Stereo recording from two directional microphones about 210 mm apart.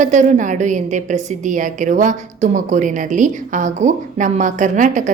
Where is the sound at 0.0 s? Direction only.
35° right (ahead or behind).